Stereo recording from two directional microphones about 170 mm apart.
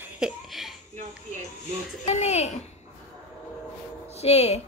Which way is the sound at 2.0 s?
40° left (ahead or behind).